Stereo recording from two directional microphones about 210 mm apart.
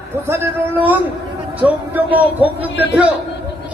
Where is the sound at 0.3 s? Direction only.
10° right (ahead or behind).